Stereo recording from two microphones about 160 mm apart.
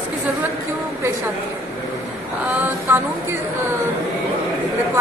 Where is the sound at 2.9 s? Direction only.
10° right (ahead or behind).